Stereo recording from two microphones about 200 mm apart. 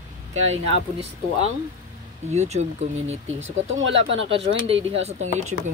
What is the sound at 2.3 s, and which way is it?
Speech, 35° right (ahead or behind).